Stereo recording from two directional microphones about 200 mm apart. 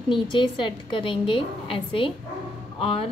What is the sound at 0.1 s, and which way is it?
A woman's voice, 25° left (ahead or behind).